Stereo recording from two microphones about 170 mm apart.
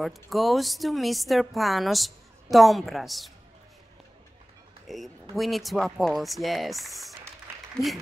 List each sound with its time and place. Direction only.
0.0 s speech: centre (ahead or behind)
4.8 s speech: centre (ahead or behind)